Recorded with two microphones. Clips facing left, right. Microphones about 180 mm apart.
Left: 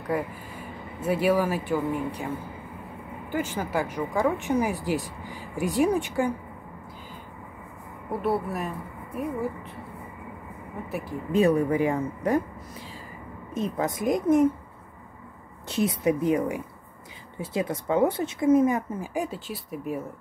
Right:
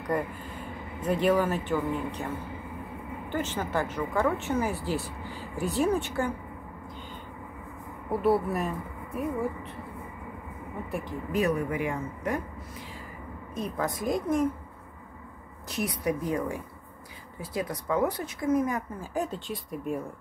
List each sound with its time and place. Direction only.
0.1 s speech: 5° left (ahead or behind)
3.3 s speech: 10° left (ahead or behind)
8.1 s a woman's voice: centre (ahead or behind)
10.9 s a woman's voice: 5° left (ahead or behind)
11.3 s speech: 30° left (ahead or behind)
13.6 s speech: 20° left (ahead or behind)
15.7 s speech: 25° left (ahead or behind)
19.1 s a woman's voice: 10° left (ahead or behind)